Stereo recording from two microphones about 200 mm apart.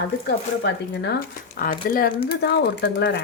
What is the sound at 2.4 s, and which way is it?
Speech, 55° left (ahead or behind).